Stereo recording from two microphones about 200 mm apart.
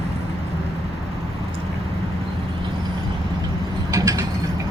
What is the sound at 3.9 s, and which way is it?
Mechanisms, 15° right (ahead or behind).